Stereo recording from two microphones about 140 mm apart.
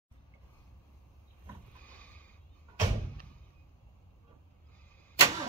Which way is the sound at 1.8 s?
10° left (ahead or behind).